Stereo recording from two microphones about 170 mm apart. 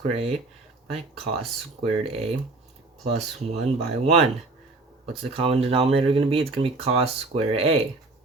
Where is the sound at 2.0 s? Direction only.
35° right (ahead or behind).